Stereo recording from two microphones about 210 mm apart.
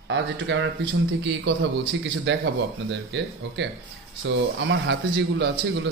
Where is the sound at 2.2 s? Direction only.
60° right (ahead or behind).